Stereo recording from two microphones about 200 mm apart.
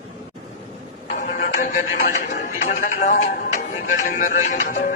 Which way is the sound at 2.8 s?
40° left (ahead or behind).